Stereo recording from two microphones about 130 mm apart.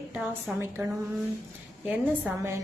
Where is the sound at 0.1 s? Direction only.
5° right (ahead or behind).